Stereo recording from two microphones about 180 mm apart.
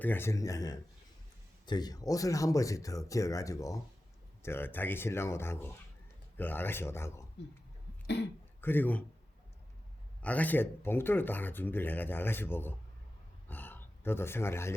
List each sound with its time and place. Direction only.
0.0 s speech: 10° left (ahead or behind)
8.0 s speech: 65° left (ahead or behind)
8.6 s speech: 10° left (ahead or behind)
10.2 s speech: 10° left (ahead or behind)